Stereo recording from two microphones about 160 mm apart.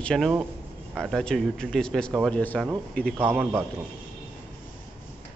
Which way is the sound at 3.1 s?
10° right (ahead or behind).